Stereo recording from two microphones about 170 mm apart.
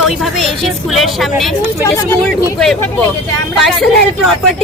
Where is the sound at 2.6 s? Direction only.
Centre (ahead or behind).